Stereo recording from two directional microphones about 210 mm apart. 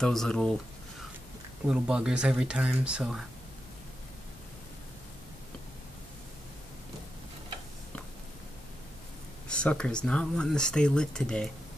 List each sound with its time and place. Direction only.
0.0 s speech: centre (ahead or behind)
1.7 s speech: 5° right (ahead or behind)
9.5 s speech: 5° left (ahead or behind)